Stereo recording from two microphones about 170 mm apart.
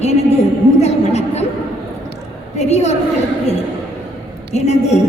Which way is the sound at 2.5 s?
40° left (ahead or behind).